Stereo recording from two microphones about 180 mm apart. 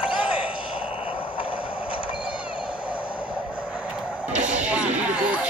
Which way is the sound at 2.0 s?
5° right (ahead or behind).